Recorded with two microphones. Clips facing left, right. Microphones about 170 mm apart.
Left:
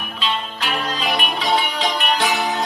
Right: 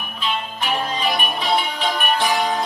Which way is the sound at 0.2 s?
90° left.